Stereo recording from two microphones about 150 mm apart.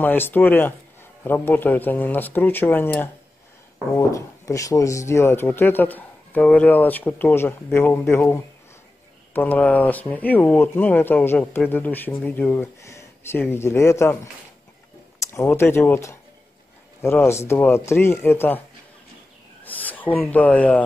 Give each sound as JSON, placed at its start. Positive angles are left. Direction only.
{"t": 0.0, "sound": "speech", "side_deg": 10}
{"t": 15.1, "sound": "speech", "side_deg": 20}
{"t": 19.6, "sound": "speech", "side_deg": 10}